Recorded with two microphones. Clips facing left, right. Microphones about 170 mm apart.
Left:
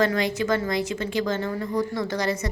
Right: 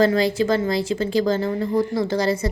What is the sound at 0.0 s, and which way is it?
A woman's voice, 30° right (ahead or behind).